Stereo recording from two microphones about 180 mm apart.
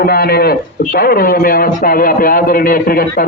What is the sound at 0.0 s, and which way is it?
Speech, 60° left (ahead or behind).